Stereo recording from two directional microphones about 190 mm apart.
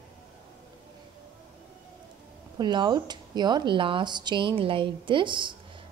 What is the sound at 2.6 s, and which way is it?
Speech, 25° right (ahead or behind).